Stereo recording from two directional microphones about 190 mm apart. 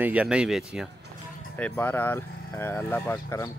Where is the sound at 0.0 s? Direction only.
5° right (ahead or behind).